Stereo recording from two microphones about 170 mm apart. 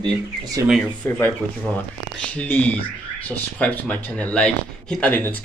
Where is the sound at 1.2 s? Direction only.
10° left (ahead or behind).